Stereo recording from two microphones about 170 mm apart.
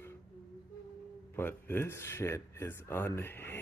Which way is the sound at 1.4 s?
10° left (ahead or behind).